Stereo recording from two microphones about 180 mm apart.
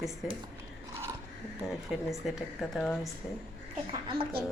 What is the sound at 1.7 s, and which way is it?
Speech, centre (ahead or behind).